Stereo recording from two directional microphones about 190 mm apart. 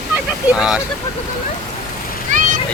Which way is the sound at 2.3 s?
40° right (ahead or behind).